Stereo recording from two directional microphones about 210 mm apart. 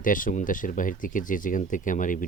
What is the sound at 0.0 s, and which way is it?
Speech, 40° left (ahead or behind).